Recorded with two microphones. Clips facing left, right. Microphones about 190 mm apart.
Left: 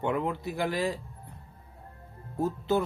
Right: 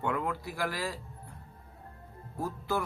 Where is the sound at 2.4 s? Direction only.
25° left (ahead or behind).